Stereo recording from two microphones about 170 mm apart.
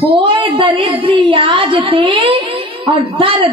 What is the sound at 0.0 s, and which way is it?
A woman's voice, 30° right (ahead or behind).